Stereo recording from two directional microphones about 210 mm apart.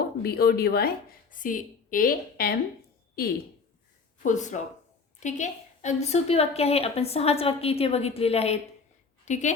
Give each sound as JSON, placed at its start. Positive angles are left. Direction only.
{"t": 0.2, "sound": "a woman's voice", "side_deg": 50}
{"t": 4.2, "sound": "a woman's voice", "side_deg": 35}